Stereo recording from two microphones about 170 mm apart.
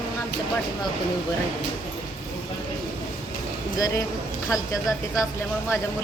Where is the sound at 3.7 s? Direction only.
20° left (ahead or behind).